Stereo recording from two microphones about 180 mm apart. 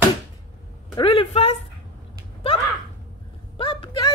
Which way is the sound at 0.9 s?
30° left (ahead or behind).